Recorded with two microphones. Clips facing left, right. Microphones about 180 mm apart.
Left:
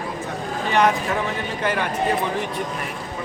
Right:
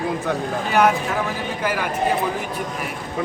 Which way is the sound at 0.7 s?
5° right (ahead or behind).